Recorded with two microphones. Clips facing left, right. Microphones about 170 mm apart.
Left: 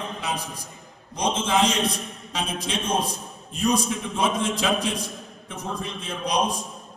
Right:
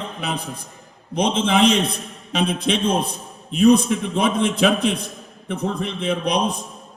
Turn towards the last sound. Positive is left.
turn(degrees=-60)  # may be behind; listen again after turning